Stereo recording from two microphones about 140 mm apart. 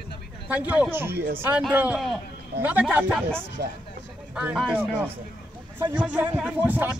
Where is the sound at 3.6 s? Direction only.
90° right.